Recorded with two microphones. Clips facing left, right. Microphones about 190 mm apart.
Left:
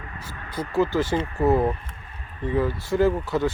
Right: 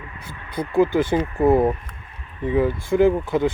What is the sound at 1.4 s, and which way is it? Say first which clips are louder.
Speech: right 4 dB; 20° right (ahead or behind).